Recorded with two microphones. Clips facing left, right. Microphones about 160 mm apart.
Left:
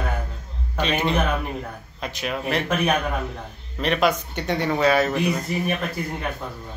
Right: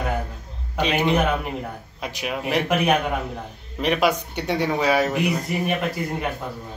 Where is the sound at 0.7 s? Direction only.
15° right (ahead or behind).